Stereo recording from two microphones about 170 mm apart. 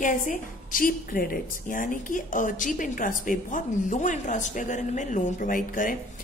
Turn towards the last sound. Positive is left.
turn(degrees=50)  # may be behind; listen again after turning